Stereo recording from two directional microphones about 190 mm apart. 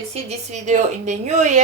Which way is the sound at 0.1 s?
35° right (ahead or behind).